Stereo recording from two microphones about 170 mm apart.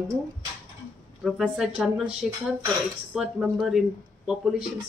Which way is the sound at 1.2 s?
5° right (ahead or behind).